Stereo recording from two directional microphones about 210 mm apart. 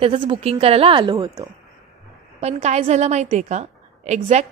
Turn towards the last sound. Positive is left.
turn(degrees=-30)  # may be behind; listen again after turning